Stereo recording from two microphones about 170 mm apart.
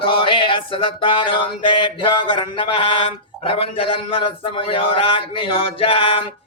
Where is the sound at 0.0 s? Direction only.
30° left (ahead or behind).